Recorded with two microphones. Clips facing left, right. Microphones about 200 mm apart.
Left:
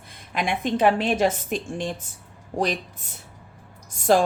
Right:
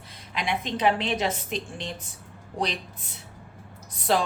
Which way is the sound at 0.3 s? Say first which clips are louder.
Left 5 dB; 50° left (ahead or behind).